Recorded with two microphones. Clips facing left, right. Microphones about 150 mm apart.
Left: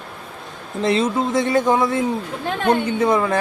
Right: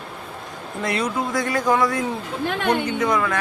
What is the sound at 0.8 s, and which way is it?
Speech, 25° left (ahead or behind).